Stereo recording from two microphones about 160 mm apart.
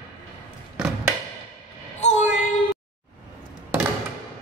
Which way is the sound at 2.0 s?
50° left (ahead or behind).